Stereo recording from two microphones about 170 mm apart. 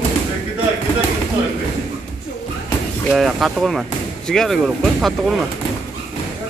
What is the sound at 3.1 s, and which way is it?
Speech, centre (ahead or behind).